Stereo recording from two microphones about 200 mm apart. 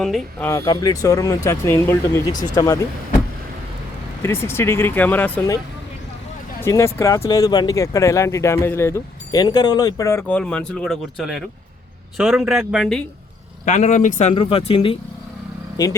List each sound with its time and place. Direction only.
0.0 s speech: centre (ahead or behind)
0.4 s speech: 15° left (ahead or behind)
4.2 s speech: 10° left (ahead or behind)
6.6 s speech: 15° left (ahead or behind); by 13.0 s centre (ahead or behind)
13.7 s speech: 35° left (ahead or behind)